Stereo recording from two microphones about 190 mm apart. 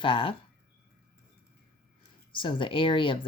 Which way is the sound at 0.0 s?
25° left (ahead or behind).